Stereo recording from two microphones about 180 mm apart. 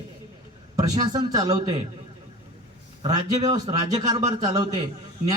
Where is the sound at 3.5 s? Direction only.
20° right (ahead or behind).